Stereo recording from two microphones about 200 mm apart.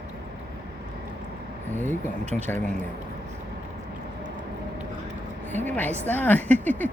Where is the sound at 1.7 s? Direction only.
10° left (ahead or behind).